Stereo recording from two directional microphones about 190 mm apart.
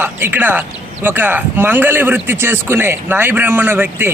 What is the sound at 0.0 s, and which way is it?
Speech, 10° right (ahead or behind).